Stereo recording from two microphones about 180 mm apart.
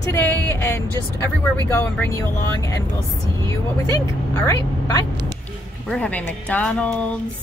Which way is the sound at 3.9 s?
20° left (ahead or behind).